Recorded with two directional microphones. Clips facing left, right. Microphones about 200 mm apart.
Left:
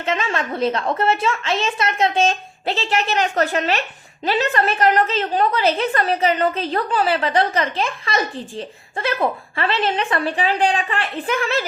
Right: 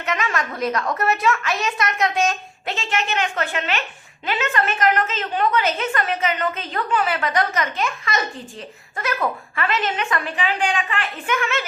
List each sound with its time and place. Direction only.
0.0 s a woman's voice: 30° left (ahead or behind)